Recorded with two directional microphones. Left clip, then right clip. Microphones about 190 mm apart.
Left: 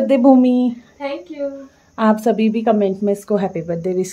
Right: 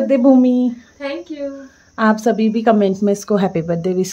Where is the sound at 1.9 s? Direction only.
Centre (ahead or behind).